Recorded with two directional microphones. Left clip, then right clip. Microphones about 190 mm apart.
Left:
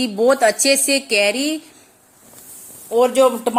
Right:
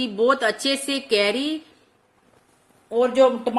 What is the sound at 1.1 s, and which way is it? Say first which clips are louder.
Speech: left 1 dB; 30° right (ahead or behind).